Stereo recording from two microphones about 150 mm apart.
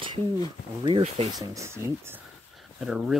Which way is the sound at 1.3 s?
20° right (ahead or behind).